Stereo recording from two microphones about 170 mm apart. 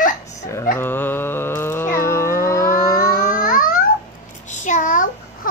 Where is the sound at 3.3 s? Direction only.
55° left (ahead or behind).